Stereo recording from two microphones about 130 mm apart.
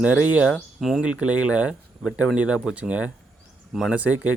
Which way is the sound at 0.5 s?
Centre (ahead or behind).